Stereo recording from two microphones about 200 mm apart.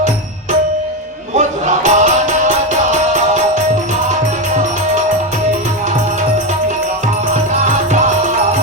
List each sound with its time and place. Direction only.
1.4 s music: 35° right (ahead or behind)